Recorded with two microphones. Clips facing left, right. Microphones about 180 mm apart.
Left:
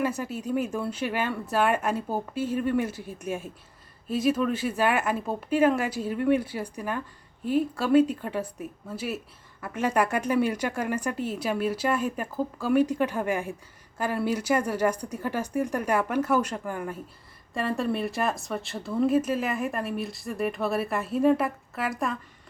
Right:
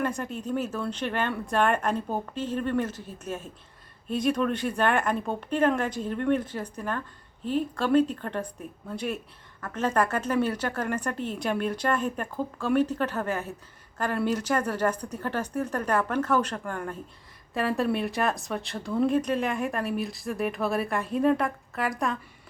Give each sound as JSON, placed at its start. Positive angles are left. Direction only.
{"t": 0.0, "sound": "speech", "side_deg": 5}